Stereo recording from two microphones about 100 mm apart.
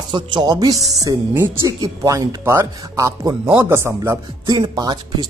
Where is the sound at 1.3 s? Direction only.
25° right (ahead or behind).